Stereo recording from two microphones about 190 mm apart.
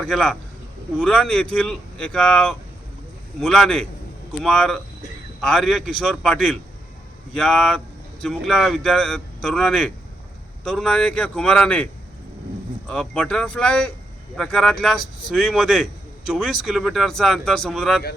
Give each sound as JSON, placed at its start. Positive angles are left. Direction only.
{"t": 0.0, "sound": "speech", "side_deg": 5}
{"t": 12.9, "sound": "speech", "side_deg": 5}